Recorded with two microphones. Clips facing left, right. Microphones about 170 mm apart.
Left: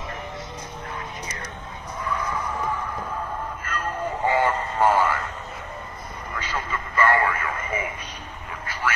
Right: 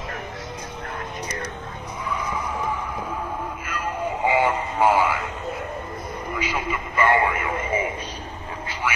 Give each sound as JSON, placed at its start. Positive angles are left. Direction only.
{"t": 2.1, "sound": "music", "side_deg": -10}
{"t": 3.6, "sound": "a sound", "side_deg": -10}
{"t": 6.3, "sound": "radio", "side_deg": -10}